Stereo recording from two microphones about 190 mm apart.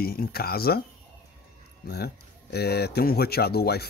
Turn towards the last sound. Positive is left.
turn(degrees=55)  # may be behind; listen again after turning